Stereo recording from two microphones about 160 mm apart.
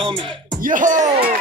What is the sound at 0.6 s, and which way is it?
Speech, 55° right (ahead or behind).